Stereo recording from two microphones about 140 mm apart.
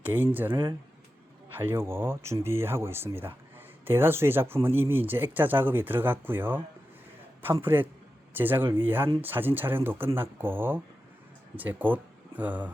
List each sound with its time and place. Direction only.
0.0 s speech: 15° right (ahead or behind)
1.5 s speech: 15° right (ahead or behind)